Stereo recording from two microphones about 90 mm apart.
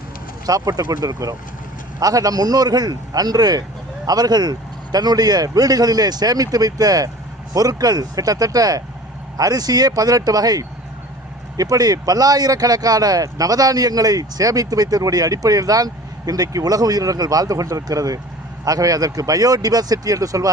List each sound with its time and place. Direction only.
0.4 s speech: 40° right (ahead or behind)